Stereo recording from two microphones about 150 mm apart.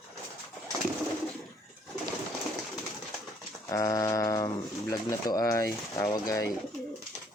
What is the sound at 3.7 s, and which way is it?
Speech, 20° left (ahead or behind).